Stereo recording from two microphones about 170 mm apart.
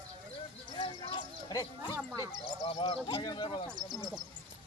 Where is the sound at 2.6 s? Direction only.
35° left (ahead or behind).